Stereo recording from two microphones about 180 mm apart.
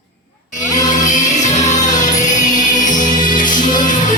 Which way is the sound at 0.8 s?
45° left (ahead or behind).